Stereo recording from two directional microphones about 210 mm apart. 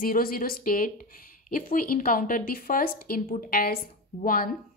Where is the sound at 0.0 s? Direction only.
45° left (ahead or behind).